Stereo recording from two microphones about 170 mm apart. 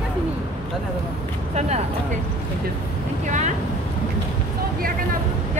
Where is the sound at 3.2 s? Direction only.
45° right (ahead or behind).